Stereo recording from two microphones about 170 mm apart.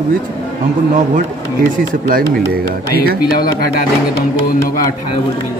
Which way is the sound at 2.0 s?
55° right (ahead or behind).